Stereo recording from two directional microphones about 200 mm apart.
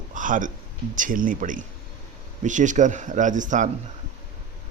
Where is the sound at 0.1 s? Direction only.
40° right (ahead or behind).